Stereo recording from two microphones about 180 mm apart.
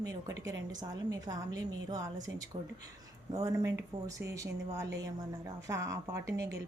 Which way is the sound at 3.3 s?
20° right (ahead or behind).